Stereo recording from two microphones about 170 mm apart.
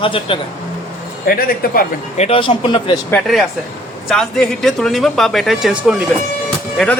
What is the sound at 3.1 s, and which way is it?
Speech, centre (ahead or behind).